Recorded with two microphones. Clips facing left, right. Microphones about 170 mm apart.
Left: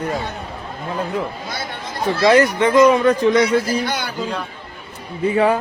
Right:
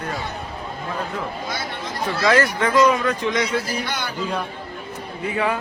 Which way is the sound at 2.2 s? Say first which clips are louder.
Left 5 dB; 20° left (ahead or behind).